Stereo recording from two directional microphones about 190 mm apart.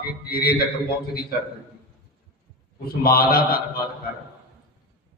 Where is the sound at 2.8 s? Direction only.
55° left (ahead or behind).